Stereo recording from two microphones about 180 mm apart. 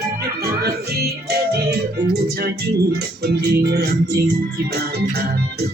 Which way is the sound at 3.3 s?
65° right (ahead or behind).